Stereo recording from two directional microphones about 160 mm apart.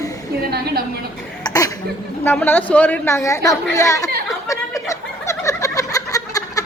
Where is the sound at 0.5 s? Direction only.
75° right (ahead or behind).